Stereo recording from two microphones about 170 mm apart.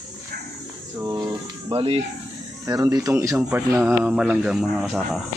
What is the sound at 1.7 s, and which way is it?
Speech, 35° right (ahead or behind).